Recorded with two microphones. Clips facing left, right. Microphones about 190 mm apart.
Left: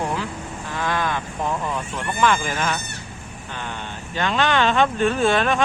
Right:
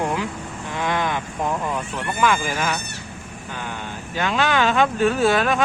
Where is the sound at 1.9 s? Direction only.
10° right (ahead or behind).